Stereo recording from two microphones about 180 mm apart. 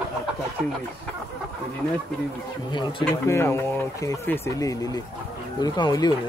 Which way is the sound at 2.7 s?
20° left (ahead or behind).